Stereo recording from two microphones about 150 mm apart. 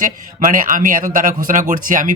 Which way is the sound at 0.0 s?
65° right (ahead or behind).